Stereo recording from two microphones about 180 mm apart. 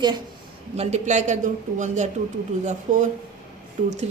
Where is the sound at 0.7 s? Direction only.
40° right (ahead or behind).